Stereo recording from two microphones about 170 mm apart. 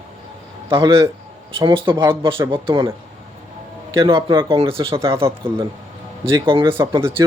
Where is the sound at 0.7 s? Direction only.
30° right (ahead or behind).